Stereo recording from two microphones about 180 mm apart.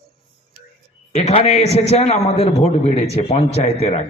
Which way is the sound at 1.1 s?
35° left (ahead or behind).